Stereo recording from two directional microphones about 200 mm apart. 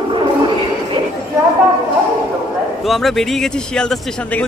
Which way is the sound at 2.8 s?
Centre (ahead or behind).